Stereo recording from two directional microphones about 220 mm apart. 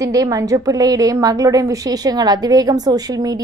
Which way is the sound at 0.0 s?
15° right (ahead or behind).